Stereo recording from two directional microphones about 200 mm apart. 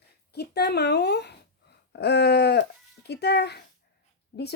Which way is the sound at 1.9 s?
55° left (ahead or behind).